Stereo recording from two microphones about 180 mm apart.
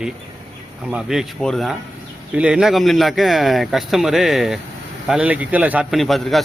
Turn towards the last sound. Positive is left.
turn(degrees=0)  # may be behind; listen again after turning